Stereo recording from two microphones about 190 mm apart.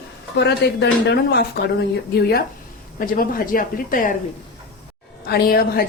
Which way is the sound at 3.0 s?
50° left (ahead or behind).